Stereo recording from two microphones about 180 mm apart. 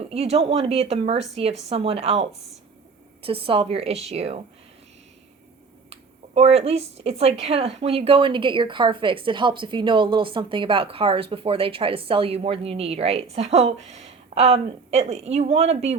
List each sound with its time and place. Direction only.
0.0 s speech: 35° right (ahead or behind)
3.2 s speech: 30° right (ahead or behind)
5.9 s speech: 35° right (ahead or behind)